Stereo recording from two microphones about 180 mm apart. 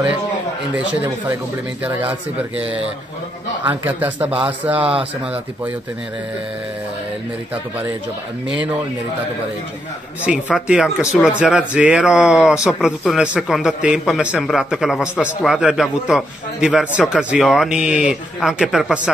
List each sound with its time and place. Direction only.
1.8 s speech: 10° right (ahead or behind)
4.8 s speech: 30° right (ahead or behind)
10.2 s speech: 5° right (ahead or behind)